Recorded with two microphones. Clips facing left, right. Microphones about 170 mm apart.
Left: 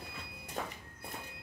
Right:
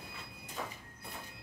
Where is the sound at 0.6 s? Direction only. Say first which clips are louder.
Left 2 dB; 50° left (ahead or behind).